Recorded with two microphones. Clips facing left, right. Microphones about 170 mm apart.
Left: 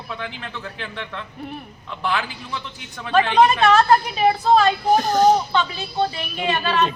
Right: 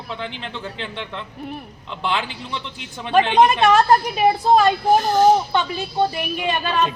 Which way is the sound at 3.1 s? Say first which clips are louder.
Right 1 dB; 20° right (ahead or behind).